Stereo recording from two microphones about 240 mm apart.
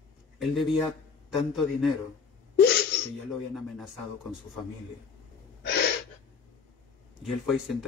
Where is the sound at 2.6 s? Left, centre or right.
Left.